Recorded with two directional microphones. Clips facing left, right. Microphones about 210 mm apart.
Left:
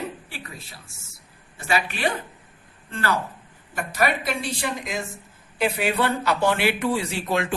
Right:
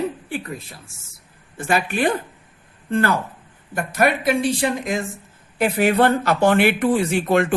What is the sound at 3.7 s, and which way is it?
Speech, 55° right (ahead or behind).